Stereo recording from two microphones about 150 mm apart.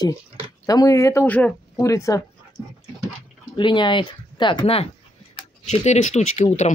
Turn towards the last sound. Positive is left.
turn(degrees=50)  # may be behind; listen again after turning